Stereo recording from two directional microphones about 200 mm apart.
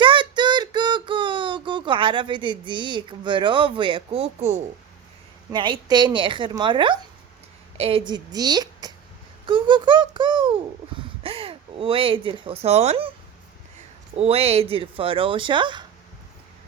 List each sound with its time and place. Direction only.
0.0 s a sound: 25° right (ahead or behind)
5.5 s speech: 25° right (ahead or behind)
14.2 s speech: 30° right (ahead or behind)